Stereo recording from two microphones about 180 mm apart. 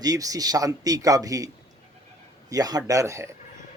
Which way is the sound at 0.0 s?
20° right (ahead or behind).